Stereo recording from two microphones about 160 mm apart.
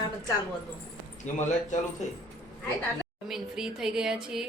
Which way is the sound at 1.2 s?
50° left (ahead or behind).